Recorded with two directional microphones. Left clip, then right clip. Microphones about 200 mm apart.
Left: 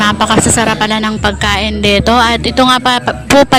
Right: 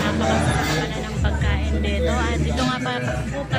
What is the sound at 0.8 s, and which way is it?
Music, 60° left (ahead or behind).